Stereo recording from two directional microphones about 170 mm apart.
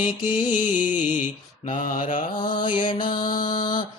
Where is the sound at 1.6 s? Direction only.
50° left (ahead or behind).